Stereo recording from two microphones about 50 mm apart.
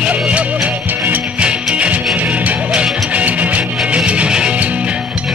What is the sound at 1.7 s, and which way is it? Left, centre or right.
Music, right.